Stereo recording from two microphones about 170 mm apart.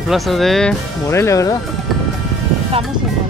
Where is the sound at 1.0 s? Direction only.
15° left (ahead or behind).